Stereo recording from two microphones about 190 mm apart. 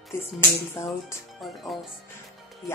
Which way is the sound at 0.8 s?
15° left (ahead or behind).